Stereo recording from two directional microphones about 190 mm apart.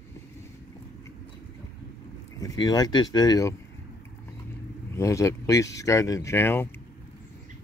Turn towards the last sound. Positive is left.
turn(degrees=10)  # may be behind; listen again after turning